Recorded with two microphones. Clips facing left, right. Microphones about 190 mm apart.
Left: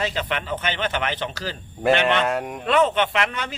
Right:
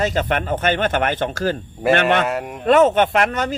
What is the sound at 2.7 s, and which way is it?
Speech, 45° right (ahead or behind).